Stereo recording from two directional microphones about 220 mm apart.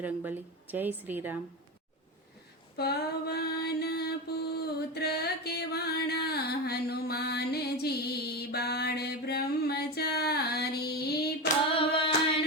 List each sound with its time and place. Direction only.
0.0 s a woman's voice: 10° right (ahead or behind)
2.7 s mantra: 45° left (ahead or behind)
4.9 s music: 45° left (ahead or behind)
11.4 s hands: 25° left (ahead or behind)